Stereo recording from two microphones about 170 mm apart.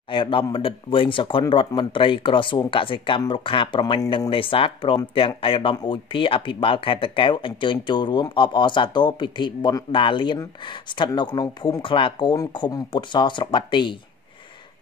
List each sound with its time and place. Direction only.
0.1 s speech: 30° left (ahead or behind)